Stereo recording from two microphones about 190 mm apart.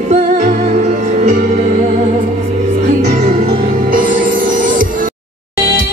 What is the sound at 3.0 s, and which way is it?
Music, 35° right (ahead or behind).